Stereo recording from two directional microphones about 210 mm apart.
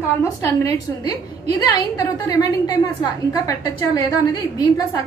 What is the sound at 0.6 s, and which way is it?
A woman's voice, 15° left (ahead or behind).